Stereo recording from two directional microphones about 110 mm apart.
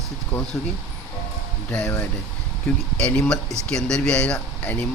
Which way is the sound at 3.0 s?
5° left (ahead or behind).